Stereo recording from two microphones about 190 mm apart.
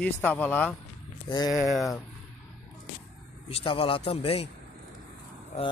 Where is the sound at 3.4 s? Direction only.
30° left (ahead or behind).